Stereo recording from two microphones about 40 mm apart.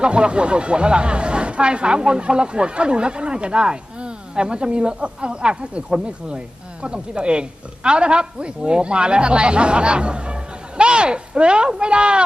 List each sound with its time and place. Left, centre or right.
0.0 s speech: right